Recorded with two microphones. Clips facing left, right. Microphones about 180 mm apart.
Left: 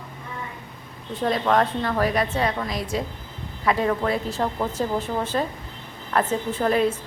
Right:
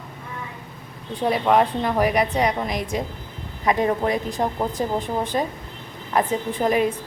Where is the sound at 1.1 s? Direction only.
10° right (ahead or behind).